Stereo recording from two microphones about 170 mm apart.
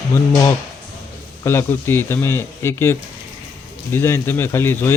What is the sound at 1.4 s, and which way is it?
Speech, 15° left (ahead or behind).